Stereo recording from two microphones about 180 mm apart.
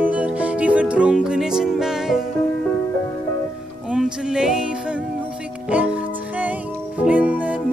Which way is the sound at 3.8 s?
5° right (ahead or behind).